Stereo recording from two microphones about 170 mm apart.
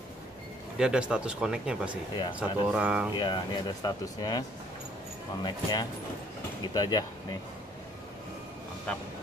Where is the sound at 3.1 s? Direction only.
25° left (ahead or behind).